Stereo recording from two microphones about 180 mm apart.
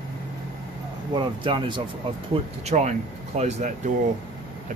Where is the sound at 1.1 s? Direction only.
25° right (ahead or behind).